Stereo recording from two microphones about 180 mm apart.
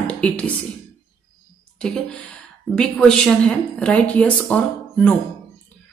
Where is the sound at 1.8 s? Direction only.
5° left (ahead or behind).